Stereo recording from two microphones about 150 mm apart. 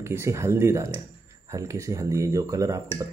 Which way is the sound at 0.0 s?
15° right (ahead or behind).